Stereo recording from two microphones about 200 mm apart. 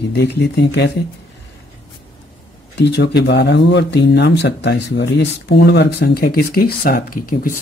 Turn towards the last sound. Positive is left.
turn(degrees=45)  # may be behind; listen again after turning